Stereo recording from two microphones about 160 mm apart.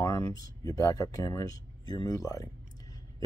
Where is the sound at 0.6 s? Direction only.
20° left (ahead or behind).